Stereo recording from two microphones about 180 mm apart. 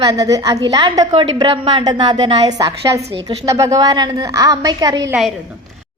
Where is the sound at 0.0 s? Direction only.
20° right (ahead or behind).